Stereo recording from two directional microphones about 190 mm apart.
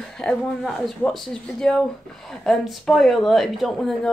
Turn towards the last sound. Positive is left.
turn(degrees=0)  # may be behind; listen again after turning